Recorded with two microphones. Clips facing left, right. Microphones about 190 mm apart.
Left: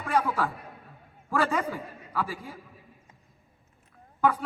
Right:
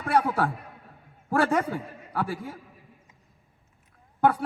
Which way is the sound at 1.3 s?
50° right (ahead or behind).